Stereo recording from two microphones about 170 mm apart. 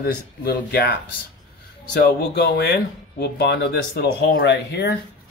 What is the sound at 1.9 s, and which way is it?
Speech, 65° left (ahead or behind).